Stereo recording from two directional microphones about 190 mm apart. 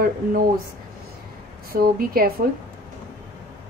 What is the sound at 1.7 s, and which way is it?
Speech, 50° right (ahead or behind).